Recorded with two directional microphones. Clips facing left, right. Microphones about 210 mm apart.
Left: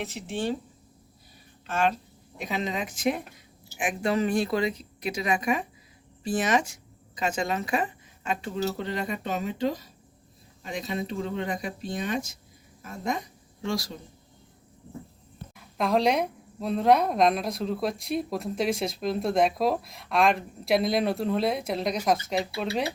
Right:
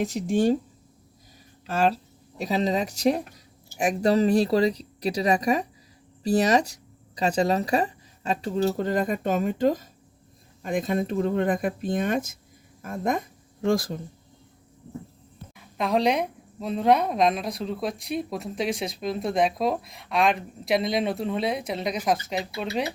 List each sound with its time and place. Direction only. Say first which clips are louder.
0.0 s speech: right 8 dB; 40° right (ahead or behind)
1.6 s a woman's voice: right 3 dB; 35° right (ahead or behind)
15.5 s a woman's voice: even; centre (ahead or behind)